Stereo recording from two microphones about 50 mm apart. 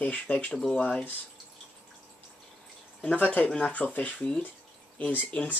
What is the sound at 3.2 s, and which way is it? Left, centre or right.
Speech, left.